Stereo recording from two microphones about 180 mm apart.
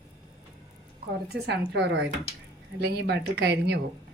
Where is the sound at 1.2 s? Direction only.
65° right (ahead or behind).